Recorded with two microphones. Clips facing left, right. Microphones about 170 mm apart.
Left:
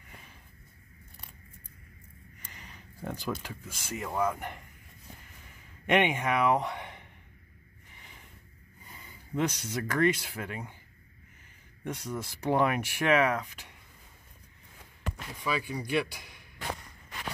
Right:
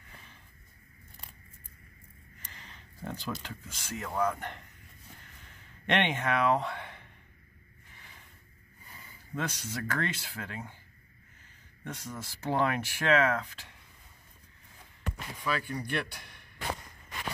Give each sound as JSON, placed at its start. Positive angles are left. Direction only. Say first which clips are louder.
{"t": 2.5, "sound": "a sound", "louder": "left 2 dB", "side_deg": 10}
{"t": 3.0, "sound": "speech", "louder": "left 3 dB", "side_deg": 10}
{"t": 5.9, "sound": "speech", "louder": "left 3 dB", "side_deg": 10}
{"t": 9.3, "sound": "speech", "louder": "left 5 dB", "side_deg": 20}
{"t": 11.8, "sound": "speech", "louder": "left 5 dB", "side_deg": 15}
{"t": 15.4, "sound": "speech", "louder": "left 1 dB", "side_deg": 10}